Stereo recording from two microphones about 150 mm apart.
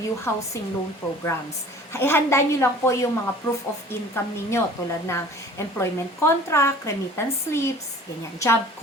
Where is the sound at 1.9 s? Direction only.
15° left (ahead or behind).